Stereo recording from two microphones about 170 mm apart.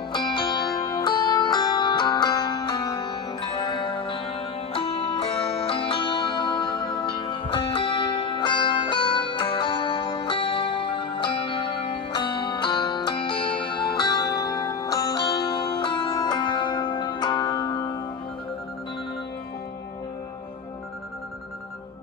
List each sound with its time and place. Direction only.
0.1 s music: 25° left (ahead or behind)